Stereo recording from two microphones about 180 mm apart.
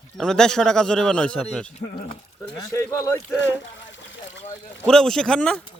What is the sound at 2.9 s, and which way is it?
Speech, 15° left (ahead or behind).